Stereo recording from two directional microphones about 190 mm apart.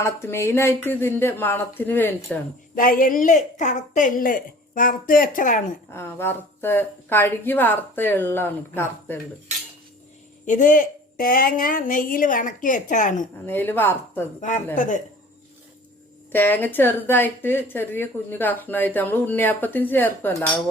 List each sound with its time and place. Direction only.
0.0 s a woman's voice: 15° left (ahead or behind)
2.7 s a woman's voice: 45° left (ahead or behind)
5.9 s a woman's voice: 10° left (ahead or behind)
10.4 s a woman's voice: 45° left (ahead or behind)
13.4 s a woman's voice: 10° left (ahead or behind)
14.8 s speech: 40° left (ahead or behind)
16.3 s a woman's voice: 10° left (ahead or behind)